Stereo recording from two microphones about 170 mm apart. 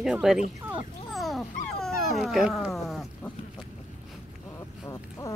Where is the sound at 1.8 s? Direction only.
Centre (ahead or behind).